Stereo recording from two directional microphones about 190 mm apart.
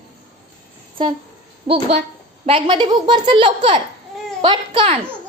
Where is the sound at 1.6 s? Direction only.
30° right (ahead or behind).